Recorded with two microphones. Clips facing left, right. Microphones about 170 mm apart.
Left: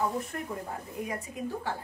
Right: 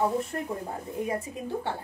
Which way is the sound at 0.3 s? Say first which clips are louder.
Right 4 dB; 30° right (ahead or behind).